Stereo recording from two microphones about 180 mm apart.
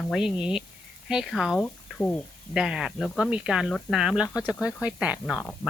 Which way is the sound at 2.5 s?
5° right (ahead or behind).